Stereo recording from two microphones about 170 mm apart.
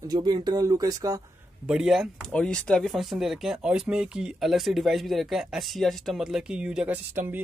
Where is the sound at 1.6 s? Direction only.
5° right (ahead or behind).